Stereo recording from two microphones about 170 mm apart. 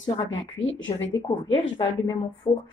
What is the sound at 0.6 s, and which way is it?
Speech, 90° left.